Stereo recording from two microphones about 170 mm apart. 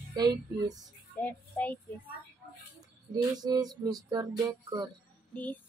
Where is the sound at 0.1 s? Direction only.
25° right (ahead or behind).